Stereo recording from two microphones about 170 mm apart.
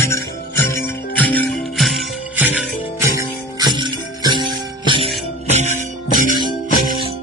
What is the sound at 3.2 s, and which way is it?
Music, 25° right (ahead or behind).